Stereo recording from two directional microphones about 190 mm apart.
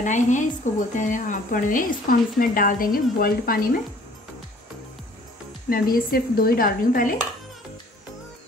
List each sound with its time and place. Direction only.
0.0 s speech: 40° left (ahead or behind)
5.7 s speech: 50° left (ahead or behind)